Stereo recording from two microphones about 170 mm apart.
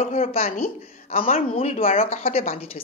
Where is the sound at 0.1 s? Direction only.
35° left (ahead or behind).